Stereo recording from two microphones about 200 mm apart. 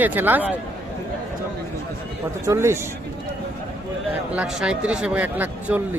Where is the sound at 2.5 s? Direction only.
15° right (ahead or behind).